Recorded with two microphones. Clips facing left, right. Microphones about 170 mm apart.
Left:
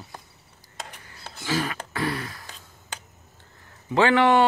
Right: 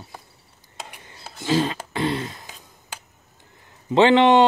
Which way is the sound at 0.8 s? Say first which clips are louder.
Right 1 dB; 10° right (ahead or behind).